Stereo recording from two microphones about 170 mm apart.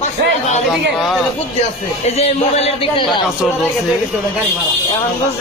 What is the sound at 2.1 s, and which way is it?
Speech, 35° left (ahead or behind).